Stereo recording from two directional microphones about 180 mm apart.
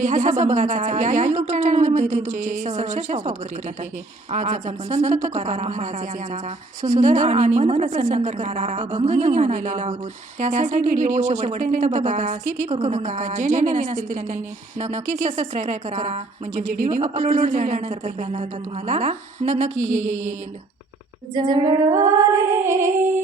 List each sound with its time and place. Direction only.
0.0 s speech: 45° right (ahead or behind)
21.3 s female singing: 20° right (ahead or behind)
22.6 s music: 15° right (ahead or behind)